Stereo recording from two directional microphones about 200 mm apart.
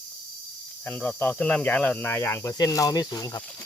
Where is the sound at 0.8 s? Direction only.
10° left (ahead or behind).